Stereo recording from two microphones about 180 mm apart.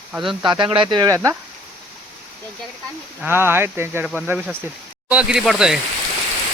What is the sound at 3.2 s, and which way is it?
Speech, 10° right (ahead or behind).